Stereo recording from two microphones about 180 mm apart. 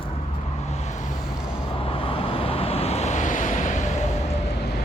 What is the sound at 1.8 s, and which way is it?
Vehicle, 30° left (ahead or behind).